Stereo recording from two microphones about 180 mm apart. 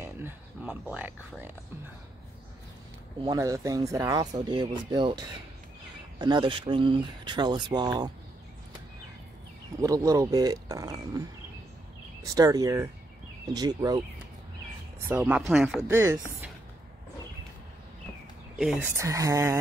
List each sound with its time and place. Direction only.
0.0 s a sound: 10° right (ahead or behind)
3.3 s speech: 15° right (ahead or behind)
9.8 s speech: 20° right (ahead or behind)
15.0 s speech: 5° right (ahead or behind)
15.9 s speech: 15° right (ahead or behind)
18.6 s speech: 5° right (ahead or behind)